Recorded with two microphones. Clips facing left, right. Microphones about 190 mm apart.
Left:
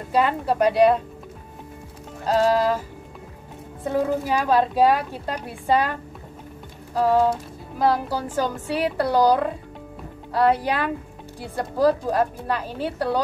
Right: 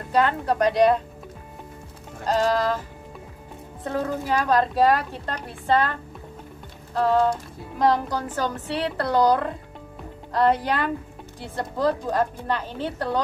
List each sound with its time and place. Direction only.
0.1 s a woman's voice: 10° left (ahead or behind)
2.2 s a woman's voice: 5° left (ahead or behind)
3.8 s a woman's voice: 10° left (ahead or behind)